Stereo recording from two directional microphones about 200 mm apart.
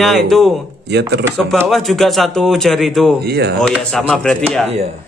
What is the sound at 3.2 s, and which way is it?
Speech, 55° right (ahead or behind).